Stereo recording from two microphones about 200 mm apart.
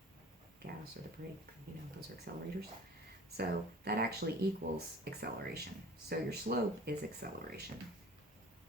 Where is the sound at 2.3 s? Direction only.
55° right (ahead or behind).